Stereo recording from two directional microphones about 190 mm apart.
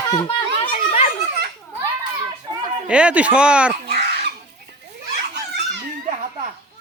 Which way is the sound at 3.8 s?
60° right (ahead or behind).